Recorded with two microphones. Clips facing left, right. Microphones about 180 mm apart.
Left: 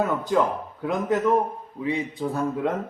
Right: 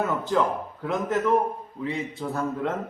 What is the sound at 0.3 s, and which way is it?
Speech, 10° left (ahead or behind).